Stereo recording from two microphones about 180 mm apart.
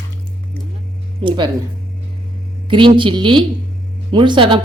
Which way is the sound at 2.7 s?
25° right (ahead or behind).